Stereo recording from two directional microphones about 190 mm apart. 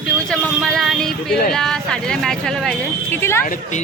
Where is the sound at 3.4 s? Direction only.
45° left (ahead or behind).